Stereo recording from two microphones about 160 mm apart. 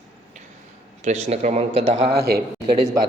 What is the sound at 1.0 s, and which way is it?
A man's voice, 45° right (ahead or behind).